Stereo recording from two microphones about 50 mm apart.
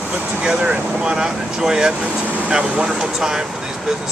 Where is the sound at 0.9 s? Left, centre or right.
Centre.